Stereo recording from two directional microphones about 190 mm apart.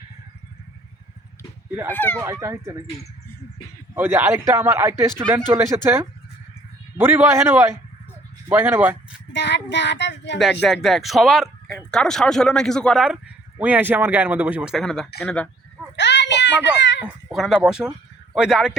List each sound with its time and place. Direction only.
1.9 s speech: 10° left (ahead or behind)
2.2 s speech: 15° right (ahead or behind)
3.9 s speech: 10° right (ahead or behind)
9.3 s child singing: 65° left (ahead or behind)
10.8 s speech: centre (ahead or behind)
16.0 s a sound: 65° left (ahead or behind)
17.0 s speech: 5° right (ahead or behind)